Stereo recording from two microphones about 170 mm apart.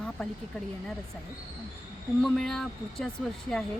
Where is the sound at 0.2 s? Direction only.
Centre (ahead or behind).